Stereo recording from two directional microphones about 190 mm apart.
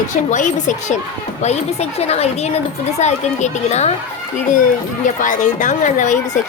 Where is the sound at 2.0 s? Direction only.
35° left (ahead or behind).